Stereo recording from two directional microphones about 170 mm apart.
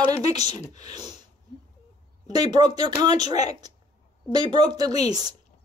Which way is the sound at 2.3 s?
25° right (ahead or behind).